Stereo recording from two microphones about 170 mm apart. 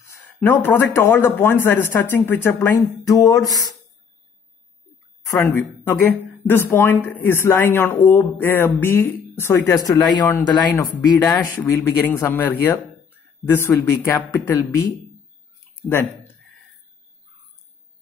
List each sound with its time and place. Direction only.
0.4 s speech: 15° left (ahead or behind)
5.4 s speech: 15° left (ahead or behind)
11.6 s speech: 10° left (ahead or behind)
15.7 s speech: 10° left (ahead or behind)